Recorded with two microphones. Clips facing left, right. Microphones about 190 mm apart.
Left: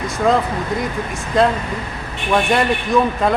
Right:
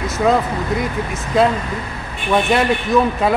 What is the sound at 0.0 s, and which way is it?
A man's voice, centre (ahead or behind).